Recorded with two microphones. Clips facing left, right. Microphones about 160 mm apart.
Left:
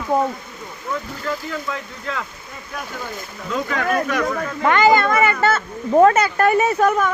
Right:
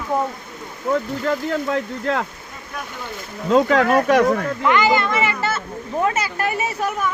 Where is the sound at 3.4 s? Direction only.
70° right (ahead or behind).